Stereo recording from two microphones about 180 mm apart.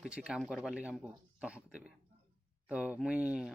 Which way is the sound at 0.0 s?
5° right (ahead or behind).